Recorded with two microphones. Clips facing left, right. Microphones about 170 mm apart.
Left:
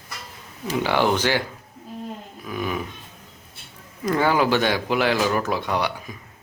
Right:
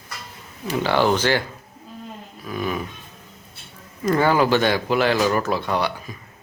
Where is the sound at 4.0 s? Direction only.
10° left (ahead or behind).